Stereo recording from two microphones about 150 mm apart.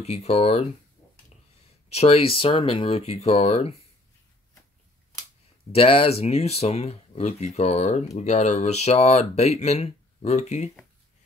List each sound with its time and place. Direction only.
0.0 s speech: 45° left (ahead or behind)
2.0 s speech: 40° left (ahead or behind)
5.7 s speech: 40° left (ahead or behind)